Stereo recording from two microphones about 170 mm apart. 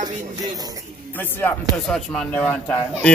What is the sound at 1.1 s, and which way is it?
Speech, 15° left (ahead or behind).